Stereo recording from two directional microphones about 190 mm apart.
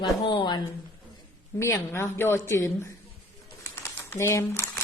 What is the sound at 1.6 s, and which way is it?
A woman's voice, 15° left (ahead or behind).